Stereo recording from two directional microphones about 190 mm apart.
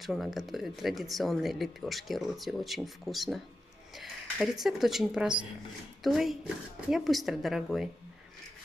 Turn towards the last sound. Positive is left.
turn(degrees=0)  # may be behind; listen again after turning